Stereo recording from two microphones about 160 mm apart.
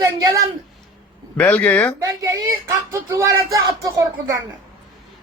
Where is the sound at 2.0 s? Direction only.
20° right (ahead or behind).